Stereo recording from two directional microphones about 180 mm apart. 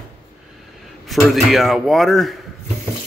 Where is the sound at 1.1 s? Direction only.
Centre (ahead or behind).